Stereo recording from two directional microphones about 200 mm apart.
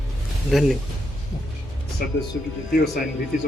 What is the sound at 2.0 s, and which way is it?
Speech, 50° left (ahead or behind).